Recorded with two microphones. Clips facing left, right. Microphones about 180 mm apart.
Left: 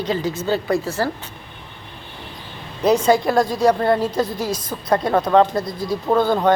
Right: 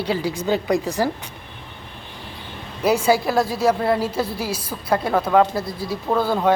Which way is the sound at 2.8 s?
10° right (ahead or behind).